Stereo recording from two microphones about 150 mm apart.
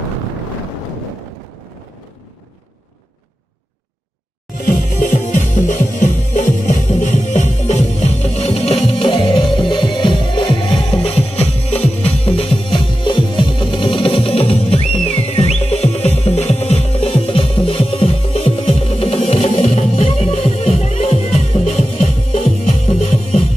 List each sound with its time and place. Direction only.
4.6 s music: 60° left (ahead or behind)